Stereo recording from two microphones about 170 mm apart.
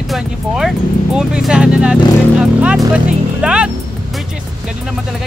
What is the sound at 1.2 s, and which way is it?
Speech, 5° right (ahead or behind).